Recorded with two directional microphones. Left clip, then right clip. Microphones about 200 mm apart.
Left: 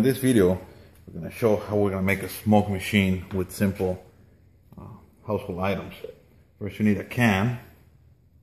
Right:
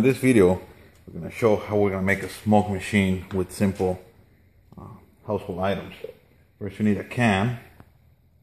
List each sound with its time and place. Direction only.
0.1 s speech: 35° right (ahead or behind)
1.8 s speech: 20° right (ahead or behind)
2.5 s speech: 10° right (ahead or behind)
3.5 s speech: 30° right (ahead or behind)
4.6 s a sound: 25° right (ahead or behind)
6.8 s speech: 20° right (ahead or behind)